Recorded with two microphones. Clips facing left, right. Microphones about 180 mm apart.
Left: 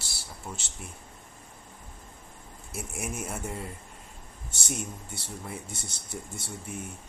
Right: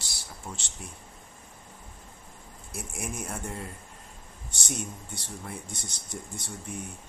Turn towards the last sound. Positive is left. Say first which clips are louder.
# even
turn(degrees=5)  # may be behind; listen again after turning